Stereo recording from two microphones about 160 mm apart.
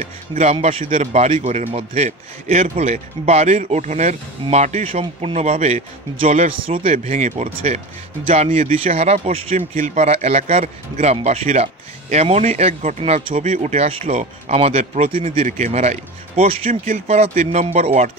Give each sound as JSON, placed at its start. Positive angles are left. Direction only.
{"t": 0.0, "sound": "a man's voice", "side_deg": -40}